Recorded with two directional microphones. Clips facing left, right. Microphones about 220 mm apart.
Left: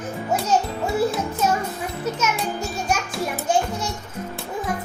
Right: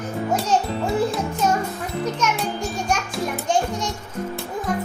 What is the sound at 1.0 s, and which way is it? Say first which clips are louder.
Music: left 2 dB; 5° left (ahead or behind).